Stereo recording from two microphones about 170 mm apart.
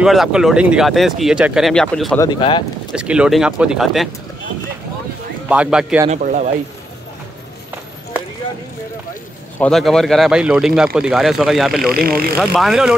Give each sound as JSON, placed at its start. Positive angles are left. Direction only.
{"t": 0.0, "sound": "speech", "side_deg": -5}
{"t": 2.1, "sound": "speech", "side_deg": 25}
{"t": 2.9, "sound": "speech", "side_deg": -5}
{"t": 5.5, "sound": "speech", "side_deg": -5}
{"t": 6.0, "sound": "speech", "side_deg": -45}
{"t": 9.6, "sound": "speech", "side_deg": 0}
{"t": 12.0, "sound": "speech", "side_deg": -60}
{"t": 12.5, "sound": "speech", "side_deg": 0}